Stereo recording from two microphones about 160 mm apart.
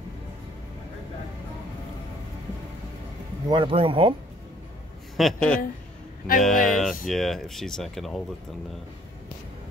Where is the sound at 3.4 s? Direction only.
30° right (ahead or behind).